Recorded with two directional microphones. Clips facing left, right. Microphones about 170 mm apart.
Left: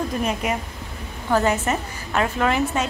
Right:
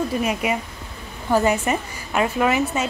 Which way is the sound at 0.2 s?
10° right (ahead or behind).